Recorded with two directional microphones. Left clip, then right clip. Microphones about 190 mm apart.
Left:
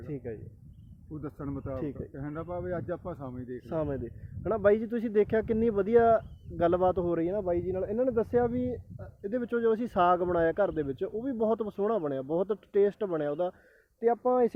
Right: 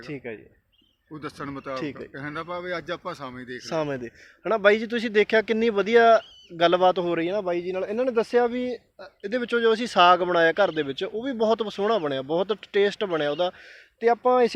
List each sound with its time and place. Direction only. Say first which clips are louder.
1.2 s speech: right 5 dB; centre (ahead or behind)
3.7 s a man's voice: right 5 dB; 35° right (ahead or behind)
8.5 s a man's voice: right 4 dB; 15° right (ahead or behind)